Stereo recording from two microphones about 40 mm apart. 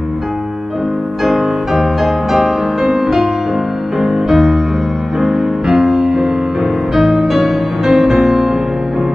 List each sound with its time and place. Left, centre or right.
1.2 s music: centre
6.0 s music: centre